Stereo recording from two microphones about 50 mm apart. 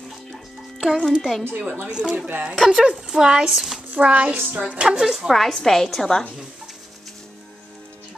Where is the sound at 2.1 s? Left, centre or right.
Right.